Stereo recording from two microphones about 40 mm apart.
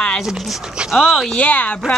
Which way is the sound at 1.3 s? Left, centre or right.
Left.